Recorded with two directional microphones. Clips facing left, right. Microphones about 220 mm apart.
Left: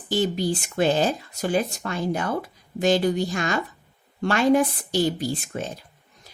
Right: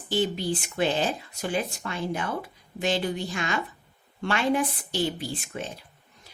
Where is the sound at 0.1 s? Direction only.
40° left (ahead or behind).